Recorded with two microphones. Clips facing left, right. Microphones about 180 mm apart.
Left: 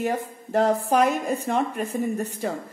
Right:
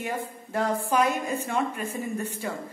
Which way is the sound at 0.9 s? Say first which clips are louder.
Left 3 dB; 65° left (ahead or behind).